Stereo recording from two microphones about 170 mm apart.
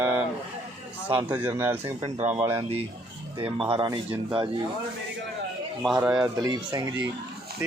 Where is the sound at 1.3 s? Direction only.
15° right (ahead or behind).